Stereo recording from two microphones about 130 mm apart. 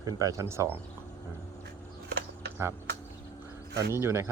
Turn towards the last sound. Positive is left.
turn(degrees=-20)  # may be behind; listen again after turning